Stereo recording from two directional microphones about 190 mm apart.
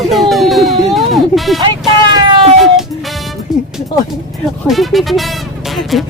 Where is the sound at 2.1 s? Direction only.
25° right (ahead or behind).